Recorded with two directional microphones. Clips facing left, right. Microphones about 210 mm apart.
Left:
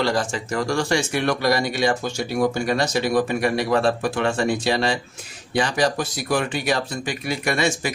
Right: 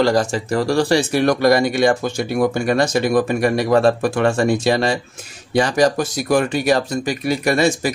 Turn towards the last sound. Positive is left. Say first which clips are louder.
# right 6 dB
turn(degrees=-40)  # may be behind; listen again after turning